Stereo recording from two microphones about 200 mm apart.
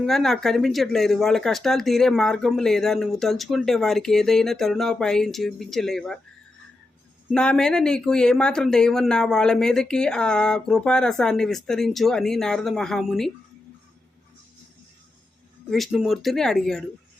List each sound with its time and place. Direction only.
0.0 s speech: centre (ahead or behind)
7.3 s speech: 5° left (ahead or behind)
15.7 s speech: centre (ahead or behind)